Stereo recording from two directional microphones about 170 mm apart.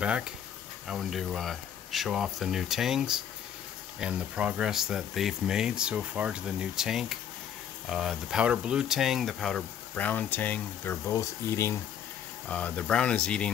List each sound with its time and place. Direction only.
0.0 s speech: 5° right (ahead or behind)